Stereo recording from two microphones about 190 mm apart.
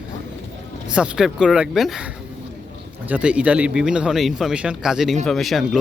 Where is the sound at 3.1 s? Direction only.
5° right (ahead or behind).